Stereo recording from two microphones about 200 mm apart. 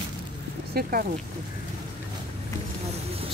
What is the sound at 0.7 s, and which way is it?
Speech, 50° right (ahead or behind).